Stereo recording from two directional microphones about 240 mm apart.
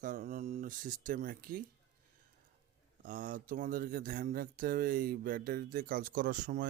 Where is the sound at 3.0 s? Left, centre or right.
Right.